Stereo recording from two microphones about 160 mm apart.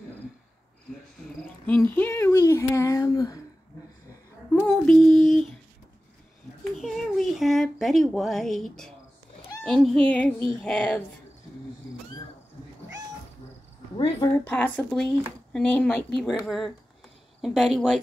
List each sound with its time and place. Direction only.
2.0 s speech: 15° left (ahead or behind)
4.6 s female singing: 5° left (ahead or behind)
6.8 s speech: centre (ahead or behind)
9.8 s child singing: centre (ahead or behind)
13.9 s speech: 25° left (ahead or behind)
14.4 s speech: 10° left (ahead or behind)
17.4 s child singing: centre (ahead or behind)